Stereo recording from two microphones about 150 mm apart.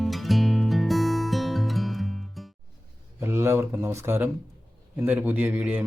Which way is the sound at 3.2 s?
15° right (ahead or behind).